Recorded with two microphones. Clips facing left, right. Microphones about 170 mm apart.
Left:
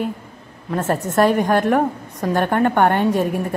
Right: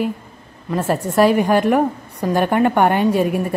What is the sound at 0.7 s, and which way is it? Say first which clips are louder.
A woman's voice: right 1 dB; 10° right (ahead or behind).